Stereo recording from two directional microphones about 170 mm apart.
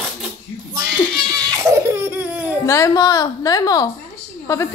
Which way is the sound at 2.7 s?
20° left (ahead or behind).